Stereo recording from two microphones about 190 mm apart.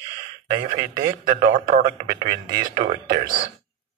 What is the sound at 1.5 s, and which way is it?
Speech, 45° right (ahead or behind).